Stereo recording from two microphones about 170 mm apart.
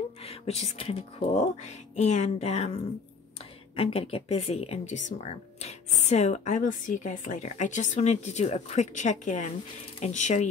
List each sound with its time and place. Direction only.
0.2 s speech: 35° left (ahead or behind)
3.7 s speech: 35° left (ahead or behind)